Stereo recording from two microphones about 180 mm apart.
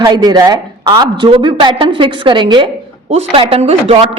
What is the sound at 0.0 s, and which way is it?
A man's voice, 20° right (ahead or behind).